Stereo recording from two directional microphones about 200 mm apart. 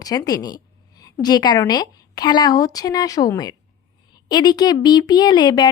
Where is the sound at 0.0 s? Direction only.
15° left (ahead or behind).